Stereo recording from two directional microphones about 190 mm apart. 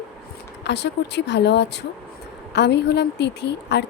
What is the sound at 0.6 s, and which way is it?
A woman's voice, 65° left (ahead or behind).